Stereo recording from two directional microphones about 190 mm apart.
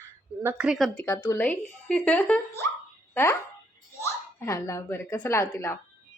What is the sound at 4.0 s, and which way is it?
Speech, 15° left (ahead or behind).